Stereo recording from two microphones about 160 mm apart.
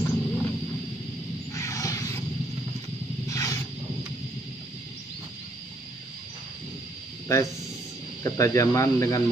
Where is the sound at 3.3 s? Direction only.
20° left (ahead or behind).